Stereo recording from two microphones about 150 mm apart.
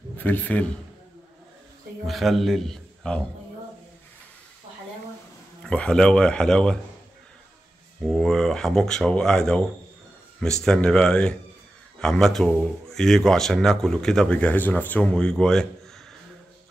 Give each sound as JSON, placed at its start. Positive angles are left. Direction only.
{"t": 0.2, "sound": "a man's voice", "side_deg": 10}
{"t": 2.0, "sound": "speech", "side_deg": 0}
{"t": 5.6, "sound": "speech", "side_deg": 5}
{"t": 8.0, "sound": "speech", "side_deg": 0}